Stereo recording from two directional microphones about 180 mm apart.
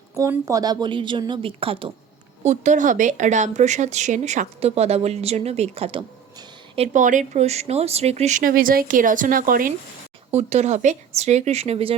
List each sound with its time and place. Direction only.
0.2 s a woman's voice: 15° right (ahead or behind)
2.4 s speech: 40° right (ahead or behind)
10.3 s speech: 40° right (ahead or behind)